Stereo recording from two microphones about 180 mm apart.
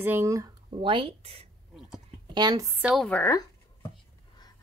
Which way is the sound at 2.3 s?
20° right (ahead or behind).